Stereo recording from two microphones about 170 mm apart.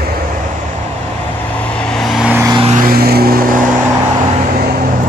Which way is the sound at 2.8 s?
60° right (ahead or behind).